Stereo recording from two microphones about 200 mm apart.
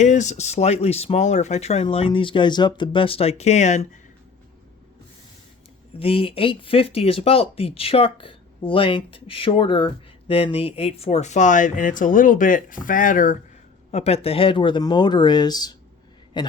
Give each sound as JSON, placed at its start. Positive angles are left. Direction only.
{"t": 0.0, "sound": "speech", "side_deg": 35}
{"t": 6.0, "sound": "speech", "side_deg": 30}